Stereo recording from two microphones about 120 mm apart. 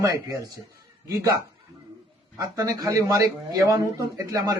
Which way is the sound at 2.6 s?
30° right (ahead or behind).